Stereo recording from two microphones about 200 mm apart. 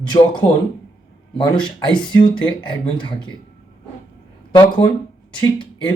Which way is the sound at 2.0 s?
20° left (ahead or behind).